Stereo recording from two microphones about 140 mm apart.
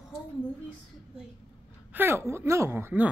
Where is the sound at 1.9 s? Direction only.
15° right (ahead or behind).